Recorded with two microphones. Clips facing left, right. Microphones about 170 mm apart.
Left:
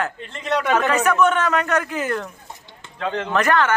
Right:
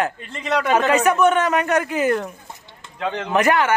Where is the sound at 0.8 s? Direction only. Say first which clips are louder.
Right 2 dB; 20° right (ahead or behind).